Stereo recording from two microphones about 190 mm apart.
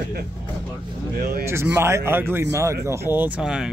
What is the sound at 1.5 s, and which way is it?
Speech, 15° right (ahead or behind).